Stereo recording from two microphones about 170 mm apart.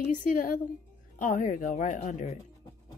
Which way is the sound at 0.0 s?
50° left (ahead or behind).